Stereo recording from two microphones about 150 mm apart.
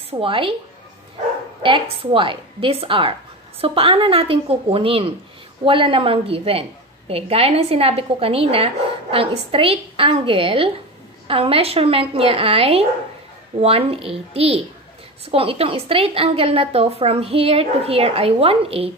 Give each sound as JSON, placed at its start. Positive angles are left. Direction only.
{"t": 0.1, "sound": "a woman's voice", "side_deg": -35}
{"t": 1.6, "sound": "a woman's voice", "side_deg": -35}